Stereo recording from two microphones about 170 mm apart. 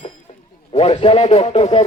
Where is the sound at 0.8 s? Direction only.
35° left (ahead or behind).